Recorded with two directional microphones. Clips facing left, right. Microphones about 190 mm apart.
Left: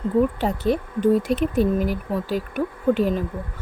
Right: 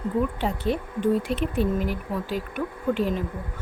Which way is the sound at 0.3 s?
40° left (ahead or behind).